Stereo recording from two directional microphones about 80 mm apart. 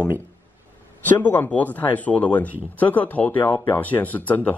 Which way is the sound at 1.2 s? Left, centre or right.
Left.